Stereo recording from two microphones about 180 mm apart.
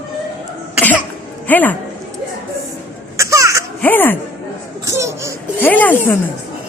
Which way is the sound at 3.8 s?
10° left (ahead or behind).